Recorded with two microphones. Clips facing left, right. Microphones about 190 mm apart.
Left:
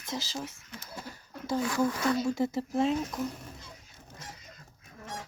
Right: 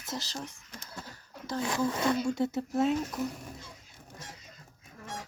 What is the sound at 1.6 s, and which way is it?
Speech, 20° right (ahead or behind).